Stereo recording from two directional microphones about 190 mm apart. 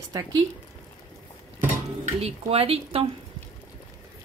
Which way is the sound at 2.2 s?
30° right (ahead or behind).